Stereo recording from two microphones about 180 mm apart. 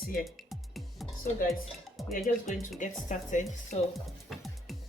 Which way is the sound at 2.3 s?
50° left (ahead or behind).